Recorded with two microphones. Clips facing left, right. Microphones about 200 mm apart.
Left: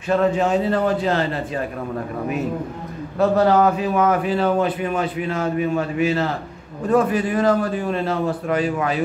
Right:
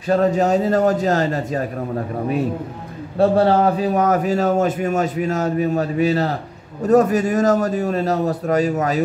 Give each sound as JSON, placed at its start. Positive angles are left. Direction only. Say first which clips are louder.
{"t": 0.1, "sound": "a man's voice", "louder": "right 2 dB", "side_deg": -40}
{"t": 3.2, "sound": "a man's voice", "louder": "right 1 dB", "side_deg": -30}